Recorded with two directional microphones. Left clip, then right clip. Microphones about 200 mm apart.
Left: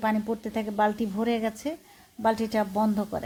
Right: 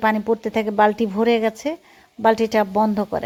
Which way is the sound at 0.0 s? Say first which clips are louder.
Right 9 dB; 25° right (ahead or behind).